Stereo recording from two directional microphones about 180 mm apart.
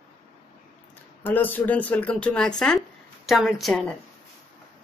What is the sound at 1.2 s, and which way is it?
A woman's voice, 10° left (ahead or behind).